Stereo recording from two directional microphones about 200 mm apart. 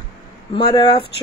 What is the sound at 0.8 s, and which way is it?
Speech, 25° left (ahead or behind).